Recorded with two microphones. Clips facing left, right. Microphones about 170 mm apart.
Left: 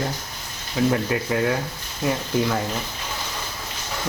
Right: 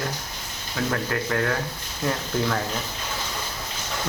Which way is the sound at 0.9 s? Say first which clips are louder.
Left 3 dB; 15° left (ahead or behind).